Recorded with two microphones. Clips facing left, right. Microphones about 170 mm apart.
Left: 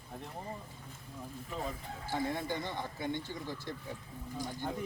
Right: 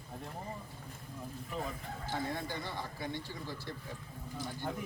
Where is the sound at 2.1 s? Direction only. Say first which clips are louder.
Left 3 dB; 20° left (ahead or behind).